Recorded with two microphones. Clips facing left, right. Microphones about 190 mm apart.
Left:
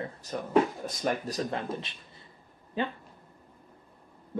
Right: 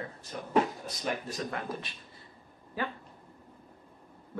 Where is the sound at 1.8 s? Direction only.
25° left (ahead or behind).